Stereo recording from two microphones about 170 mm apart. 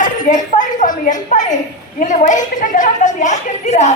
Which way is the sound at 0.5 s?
50° left (ahead or behind).